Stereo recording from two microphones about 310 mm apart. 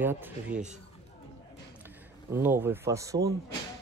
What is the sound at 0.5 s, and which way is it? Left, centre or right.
Speech, right.